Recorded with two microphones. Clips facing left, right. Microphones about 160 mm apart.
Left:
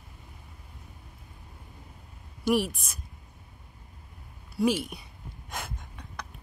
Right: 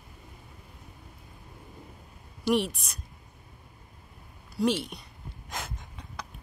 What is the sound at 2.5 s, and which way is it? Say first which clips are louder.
Speech: even; centre (ahead or behind).